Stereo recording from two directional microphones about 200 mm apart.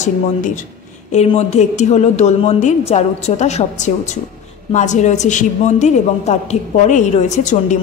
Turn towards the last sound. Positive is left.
turn(degrees=35)  # may be behind; listen again after turning